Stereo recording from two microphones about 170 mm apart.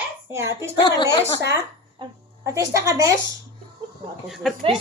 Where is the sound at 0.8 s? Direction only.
25° left (ahead or behind).